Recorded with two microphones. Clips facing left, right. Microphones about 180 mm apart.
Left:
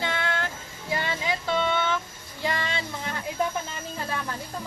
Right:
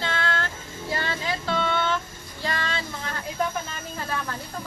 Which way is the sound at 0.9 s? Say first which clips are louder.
Left 1 dB; 20° left (ahead or behind).